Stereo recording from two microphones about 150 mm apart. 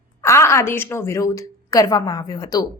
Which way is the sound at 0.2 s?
15° left (ahead or behind).